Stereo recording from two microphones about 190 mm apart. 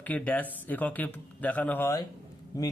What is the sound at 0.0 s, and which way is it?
A man's voice, 10° left (ahead or behind).